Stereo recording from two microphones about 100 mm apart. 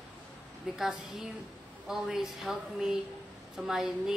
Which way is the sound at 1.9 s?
5° right (ahead or behind).